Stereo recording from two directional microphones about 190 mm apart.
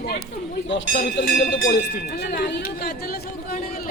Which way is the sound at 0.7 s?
65° left (ahead or behind).